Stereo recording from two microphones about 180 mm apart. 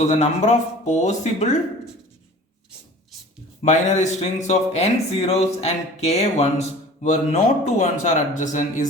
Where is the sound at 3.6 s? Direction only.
40° left (ahead or behind).